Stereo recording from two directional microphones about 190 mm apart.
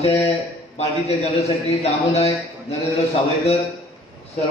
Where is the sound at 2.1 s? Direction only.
35° left (ahead or behind).